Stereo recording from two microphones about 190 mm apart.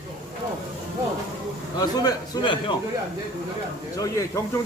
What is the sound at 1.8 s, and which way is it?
Speech, 20° left (ahead or behind).